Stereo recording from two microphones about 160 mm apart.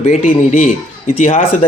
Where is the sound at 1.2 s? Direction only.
35° left (ahead or behind).